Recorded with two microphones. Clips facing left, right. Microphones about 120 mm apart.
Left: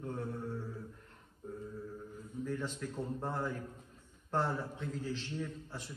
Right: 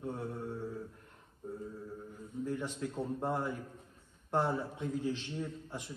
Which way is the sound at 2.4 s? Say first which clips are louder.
Right 2 dB; 15° right (ahead or behind).